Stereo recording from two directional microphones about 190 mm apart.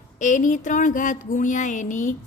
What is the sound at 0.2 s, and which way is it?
A woman's voice, 40° left (ahead or behind).